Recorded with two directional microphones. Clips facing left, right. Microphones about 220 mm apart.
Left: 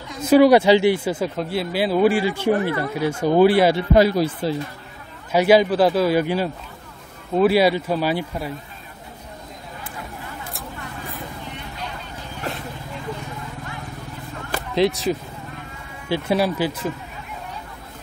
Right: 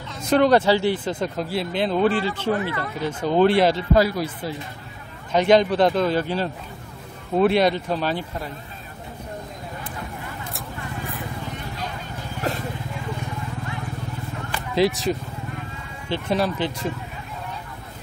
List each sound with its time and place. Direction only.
0.2 s speech: 5° left (ahead or behind)
3.9 s speech: 25° left (ahead or behind)
5.3 s speech: 5° left (ahead or behind)
14.7 s speech: centre (ahead or behind)